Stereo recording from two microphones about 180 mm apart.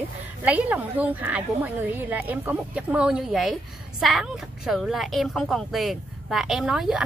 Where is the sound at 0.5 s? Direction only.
10° right (ahead or behind).